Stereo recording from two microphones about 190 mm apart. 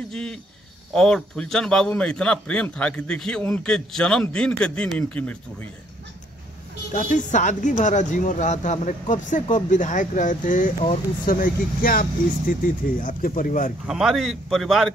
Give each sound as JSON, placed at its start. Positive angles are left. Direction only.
{"t": 0.1, "sound": "a man's voice", "side_deg": 5}
{"t": 6.9, "sound": "speech", "side_deg": 45}
{"t": 13.8, "sound": "a man's voice", "side_deg": 0}